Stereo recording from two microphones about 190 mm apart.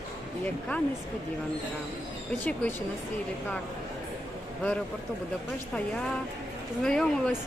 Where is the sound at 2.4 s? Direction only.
10° left (ahead or behind).